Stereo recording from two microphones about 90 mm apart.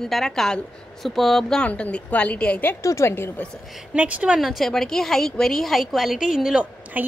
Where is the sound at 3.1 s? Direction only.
25° left (ahead or behind).